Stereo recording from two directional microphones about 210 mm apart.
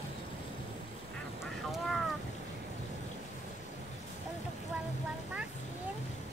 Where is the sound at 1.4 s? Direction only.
Centre (ahead or behind).